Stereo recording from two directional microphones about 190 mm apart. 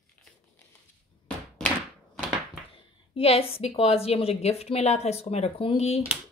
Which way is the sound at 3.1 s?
30° left (ahead or behind).